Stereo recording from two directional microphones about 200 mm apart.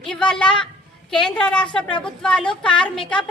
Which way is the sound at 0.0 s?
5° left (ahead or behind).